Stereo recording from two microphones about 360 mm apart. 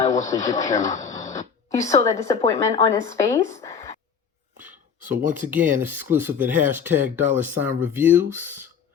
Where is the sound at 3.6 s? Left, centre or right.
Centre.